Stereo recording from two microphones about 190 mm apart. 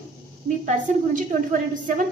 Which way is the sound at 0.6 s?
40° right (ahead or behind).